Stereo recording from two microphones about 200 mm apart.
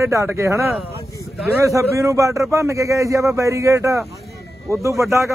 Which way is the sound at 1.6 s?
15° right (ahead or behind).